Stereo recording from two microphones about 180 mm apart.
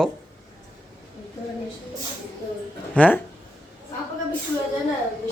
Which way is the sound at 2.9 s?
10° left (ahead or behind).